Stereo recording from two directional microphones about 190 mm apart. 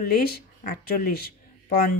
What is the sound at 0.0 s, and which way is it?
Speech, 55° left (ahead or behind).